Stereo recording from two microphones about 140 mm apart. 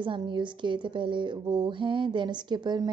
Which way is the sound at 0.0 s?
35° right (ahead or behind).